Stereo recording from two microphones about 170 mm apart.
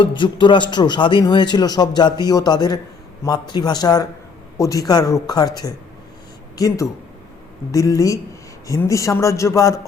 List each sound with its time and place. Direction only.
0.0 s a man's voice: 30° left (ahead or behind)
6.6 s a man's voice: 20° left (ahead or behind)